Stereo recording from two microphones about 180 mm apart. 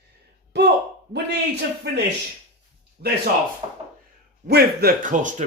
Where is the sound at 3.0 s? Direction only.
60° right (ahead or behind).